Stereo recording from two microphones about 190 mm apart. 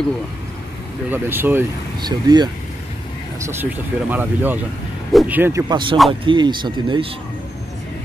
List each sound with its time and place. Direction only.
1.1 s speech: 10° right (ahead or behind)
2.0 s speech: 20° right (ahead or behind)
3.3 s speech: 10° right (ahead or behind)
5.7 s speech: 25° right (ahead or behind)